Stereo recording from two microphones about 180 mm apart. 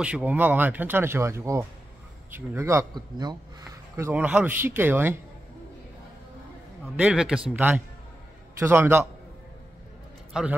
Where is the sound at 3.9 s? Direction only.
10° right (ahead or behind).